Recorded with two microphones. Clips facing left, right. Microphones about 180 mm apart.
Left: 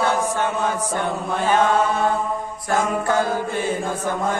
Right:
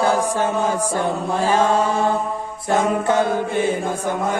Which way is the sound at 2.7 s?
25° right (ahead or behind).